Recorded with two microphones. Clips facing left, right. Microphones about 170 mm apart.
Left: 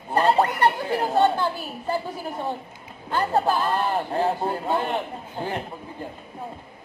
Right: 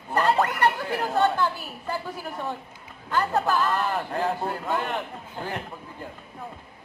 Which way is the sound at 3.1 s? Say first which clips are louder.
Left 2 dB; 30° left (ahead or behind).